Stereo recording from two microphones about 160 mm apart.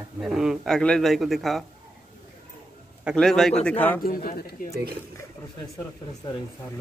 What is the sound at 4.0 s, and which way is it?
Speech, 65° left (ahead or behind).